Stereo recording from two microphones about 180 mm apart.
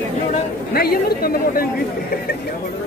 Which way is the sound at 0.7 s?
60° left (ahead or behind).